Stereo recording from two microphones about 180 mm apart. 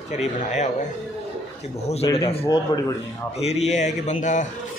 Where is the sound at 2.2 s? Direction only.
35° left (ahead or behind).